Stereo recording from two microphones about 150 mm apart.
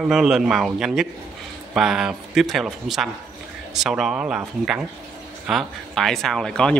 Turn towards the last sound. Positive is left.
turn(degrees=5)  # may be behind; listen again after turning